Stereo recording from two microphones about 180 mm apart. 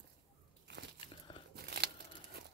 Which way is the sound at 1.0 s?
30° left (ahead or behind).